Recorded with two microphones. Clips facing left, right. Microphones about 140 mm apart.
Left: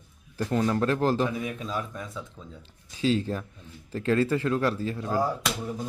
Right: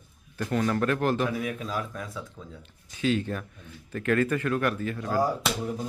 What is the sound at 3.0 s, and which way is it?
Speech, 30° left (ahead or behind).